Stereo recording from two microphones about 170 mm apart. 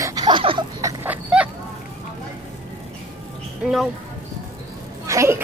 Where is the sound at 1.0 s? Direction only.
10° right (ahead or behind).